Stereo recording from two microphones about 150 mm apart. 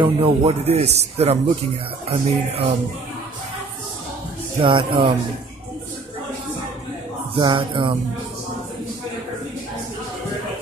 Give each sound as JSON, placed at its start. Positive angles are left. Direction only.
{"t": 0.0, "sound": "a man's voice", "side_deg": -40}
{"t": 4.6, "sound": "a man's voice", "side_deg": -35}
{"t": 7.3, "sound": "a man's voice", "side_deg": -35}